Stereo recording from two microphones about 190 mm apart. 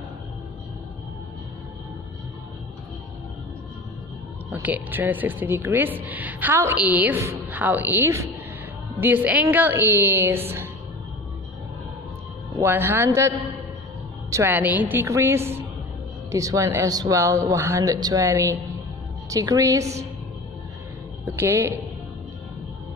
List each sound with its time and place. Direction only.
4.5 s a man's voice: 10° right (ahead or behind)
12.5 s a man's voice: 10° right (ahead or behind)
14.3 s a man's voice: 10° right (ahead or behind)
21.4 s a man's voice: 15° right (ahead or behind)